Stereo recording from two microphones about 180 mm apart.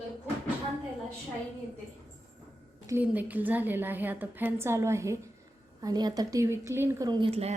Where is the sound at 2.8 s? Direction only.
10° right (ahead or behind); by 7.5 s 35° right (ahead or behind).